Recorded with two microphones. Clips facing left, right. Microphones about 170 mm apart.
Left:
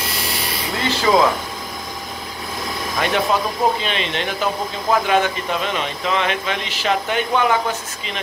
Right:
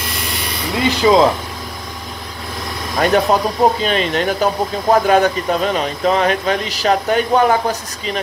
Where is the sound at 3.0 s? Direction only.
40° right (ahead or behind).